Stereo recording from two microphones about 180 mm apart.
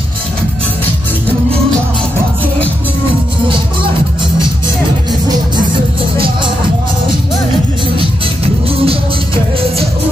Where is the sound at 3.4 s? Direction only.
30° right (ahead or behind).